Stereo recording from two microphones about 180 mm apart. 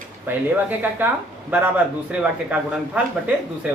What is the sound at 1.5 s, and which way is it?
Speech, 10° right (ahead or behind).